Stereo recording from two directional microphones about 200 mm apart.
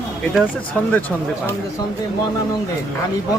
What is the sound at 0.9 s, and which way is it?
Speech, 5° left (ahead or behind).